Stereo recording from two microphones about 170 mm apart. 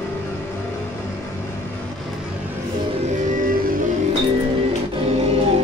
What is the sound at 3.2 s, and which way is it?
Music, 50° right (ahead or behind).